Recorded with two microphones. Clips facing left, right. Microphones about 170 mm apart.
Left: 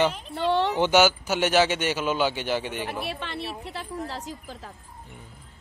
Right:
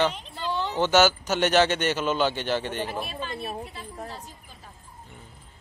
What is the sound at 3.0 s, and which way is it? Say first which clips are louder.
Speech: left 1 dB; 70° left (ahead or behind).